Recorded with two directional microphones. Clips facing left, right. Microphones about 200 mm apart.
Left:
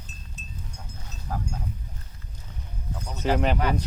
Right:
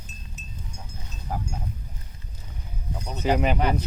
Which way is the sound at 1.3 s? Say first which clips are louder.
Right 1 dB; 20° right (ahead or behind).